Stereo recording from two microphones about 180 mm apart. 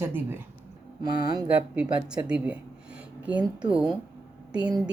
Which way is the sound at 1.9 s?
5° right (ahead or behind).